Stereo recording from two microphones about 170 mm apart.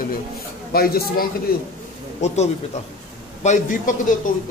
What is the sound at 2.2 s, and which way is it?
Speech, 45° left (ahead or behind).